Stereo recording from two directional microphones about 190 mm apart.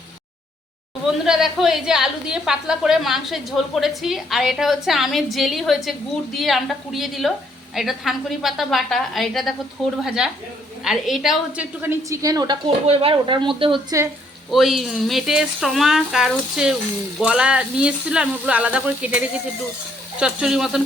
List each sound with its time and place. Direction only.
1.2 s a woman's voice: centre (ahead or behind); by 13.7 s 25° right (ahead or behind)
14.5 s a woman's voice: centre (ahead or behind)